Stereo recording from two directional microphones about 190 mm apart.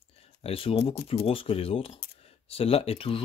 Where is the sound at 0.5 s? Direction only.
30° left (ahead or behind).